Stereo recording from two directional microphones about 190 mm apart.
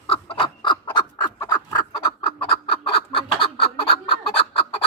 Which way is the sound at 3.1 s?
25° left (ahead or behind).